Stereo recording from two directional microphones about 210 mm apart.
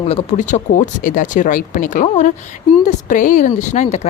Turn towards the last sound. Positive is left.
turn(degrees=35)  # may be behind; listen again after turning